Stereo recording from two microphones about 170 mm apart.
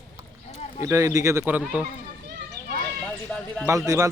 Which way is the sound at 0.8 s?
15° right (ahead or behind).